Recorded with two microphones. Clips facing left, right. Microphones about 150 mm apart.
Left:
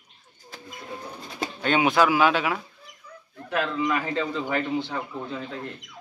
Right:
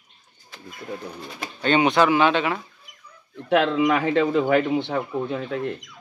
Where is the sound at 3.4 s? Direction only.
75° right (ahead or behind); by 5.6 s 60° right (ahead or behind).